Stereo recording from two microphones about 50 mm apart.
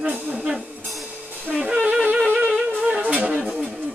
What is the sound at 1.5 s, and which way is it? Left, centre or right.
Wind instrument, centre.